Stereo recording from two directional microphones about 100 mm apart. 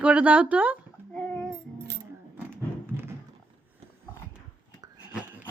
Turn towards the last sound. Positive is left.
turn(degrees=-10)  # may be behind; listen again after turning